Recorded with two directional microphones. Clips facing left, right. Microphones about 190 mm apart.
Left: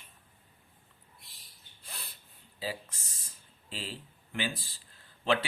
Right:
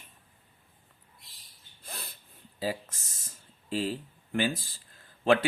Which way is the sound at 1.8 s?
45° right (ahead or behind).